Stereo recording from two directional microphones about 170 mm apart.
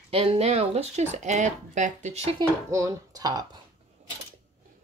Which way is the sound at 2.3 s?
20° right (ahead or behind).